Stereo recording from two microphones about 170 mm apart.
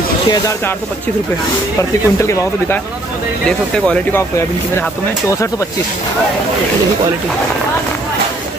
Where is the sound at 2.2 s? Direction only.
15° left (ahead or behind).